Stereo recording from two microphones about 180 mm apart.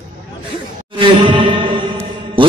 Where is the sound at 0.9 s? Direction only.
30° right (ahead or behind).